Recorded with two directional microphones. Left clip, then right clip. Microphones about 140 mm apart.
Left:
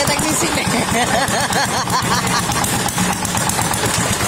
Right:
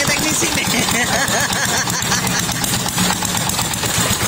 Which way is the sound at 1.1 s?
15° left (ahead or behind).